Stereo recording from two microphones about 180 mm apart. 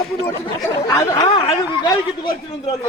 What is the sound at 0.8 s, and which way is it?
Speech, 20° left (ahead or behind).